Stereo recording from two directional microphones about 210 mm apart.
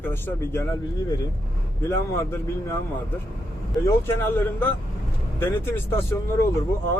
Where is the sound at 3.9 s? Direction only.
10° left (ahead or behind).